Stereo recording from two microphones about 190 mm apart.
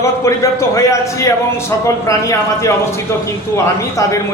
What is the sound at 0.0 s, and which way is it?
A man's voice, 15° left (ahead or behind).